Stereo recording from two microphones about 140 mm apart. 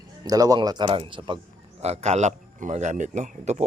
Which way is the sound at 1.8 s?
50° right (ahead or behind).